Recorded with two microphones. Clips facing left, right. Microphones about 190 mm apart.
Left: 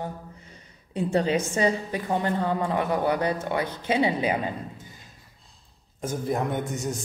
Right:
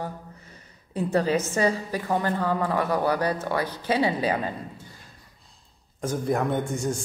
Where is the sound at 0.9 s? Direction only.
25° left (ahead or behind).